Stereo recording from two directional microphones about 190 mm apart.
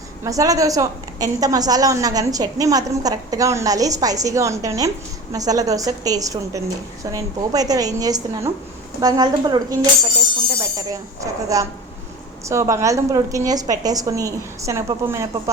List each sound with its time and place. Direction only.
0.3 s a woman's voice: 20° right (ahead or behind)